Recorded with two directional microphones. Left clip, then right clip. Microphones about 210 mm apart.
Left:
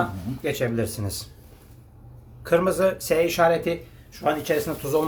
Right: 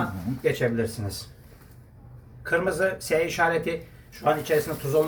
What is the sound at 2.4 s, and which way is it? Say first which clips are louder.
A man's voice: left 4 dB; 55° left (ahead or behind).